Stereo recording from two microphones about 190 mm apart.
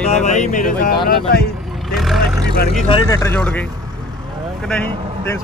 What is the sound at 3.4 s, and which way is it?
Speech, 5° left (ahead or behind).